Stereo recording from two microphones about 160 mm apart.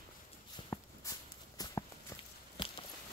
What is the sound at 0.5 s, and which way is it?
Walk, 20° left (ahead or behind).